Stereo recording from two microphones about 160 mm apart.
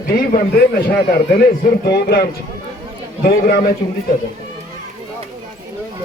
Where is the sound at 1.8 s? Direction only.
85° left.